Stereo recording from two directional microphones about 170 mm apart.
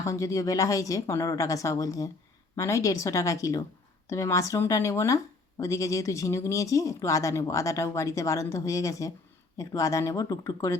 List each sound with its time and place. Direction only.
0.0 s speech: 20° left (ahead or behind)